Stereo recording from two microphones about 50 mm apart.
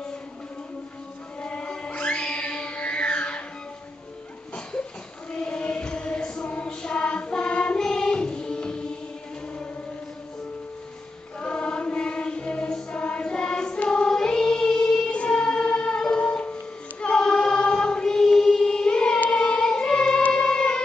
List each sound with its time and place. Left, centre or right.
1.4 s music: left
5.3 s music: centre
11.3 s music: left
13.0 s choir: centre
19.3 s music: centre